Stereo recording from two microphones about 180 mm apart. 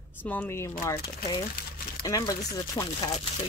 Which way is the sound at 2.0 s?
20° left (ahead or behind).